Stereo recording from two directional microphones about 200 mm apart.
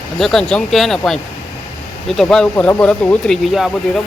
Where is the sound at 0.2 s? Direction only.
Centre (ahead or behind).